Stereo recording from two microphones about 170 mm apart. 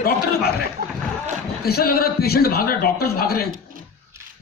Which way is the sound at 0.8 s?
60° right (ahead or behind).